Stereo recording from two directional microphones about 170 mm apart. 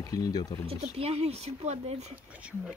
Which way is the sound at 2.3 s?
5° right (ahead or behind).